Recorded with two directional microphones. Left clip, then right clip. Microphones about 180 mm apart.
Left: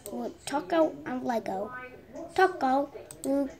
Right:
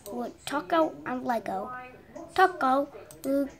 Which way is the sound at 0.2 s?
10° right (ahead or behind).